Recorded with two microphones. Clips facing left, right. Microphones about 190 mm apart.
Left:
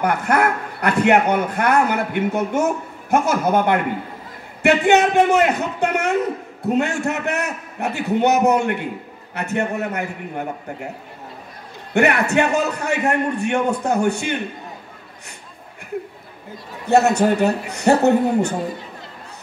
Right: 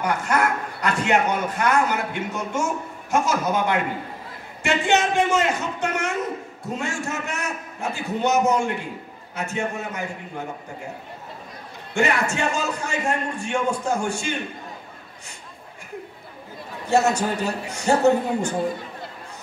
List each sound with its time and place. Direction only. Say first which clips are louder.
0.0 s a man's voice: left 4 dB; 60° left (ahead or behind)
11.9 s a man's voice: left 5 dB; 65° left (ahead or behind)
16.9 s a man's voice: left 5 dB; 65° left (ahead or behind)